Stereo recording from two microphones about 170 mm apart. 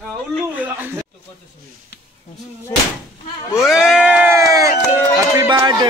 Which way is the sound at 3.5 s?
Centre (ahead or behind).